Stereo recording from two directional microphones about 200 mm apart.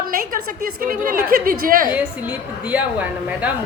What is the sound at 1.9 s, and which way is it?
A woman's voice, 10° right (ahead or behind).